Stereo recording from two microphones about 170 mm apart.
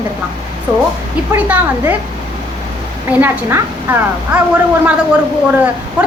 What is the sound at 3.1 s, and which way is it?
A woman's voice, 10° right (ahead or behind).